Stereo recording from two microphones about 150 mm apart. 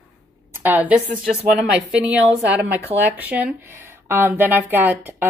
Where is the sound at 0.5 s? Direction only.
10° right (ahead or behind).